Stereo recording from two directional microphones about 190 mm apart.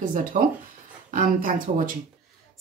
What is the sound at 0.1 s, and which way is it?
Speech, 45° right (ahead or behind).